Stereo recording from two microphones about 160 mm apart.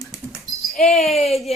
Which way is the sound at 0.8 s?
Centre (ahead or behind).